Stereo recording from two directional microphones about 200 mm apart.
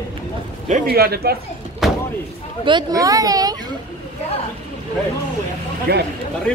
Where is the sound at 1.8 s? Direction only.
Centre (ahead or behind).